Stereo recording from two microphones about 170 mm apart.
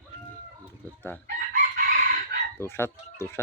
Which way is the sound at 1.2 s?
50° right (ahead or behind).